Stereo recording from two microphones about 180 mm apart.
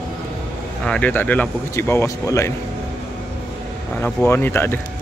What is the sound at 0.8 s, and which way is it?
Speech, 5° left (ahead or behind).